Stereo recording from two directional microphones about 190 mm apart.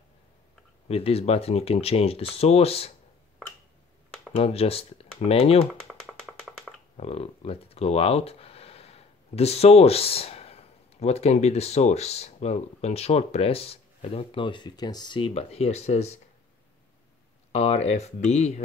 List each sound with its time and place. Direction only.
0.8 s speech: 30° left (ahead or behind)
4.4 s speech: 30° left (ahead or behind)
7.0 s speech: 30° left (ahead or behind)
17.5 s speech: 35° left (ahead or behind)